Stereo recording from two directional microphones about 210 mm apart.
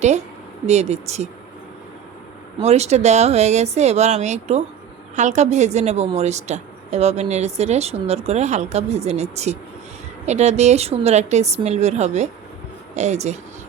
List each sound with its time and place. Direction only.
0.7 s a woman's voice: 30° right (ahead or behind)
2.6 s a woman's voice: 30° right (ahead or behind)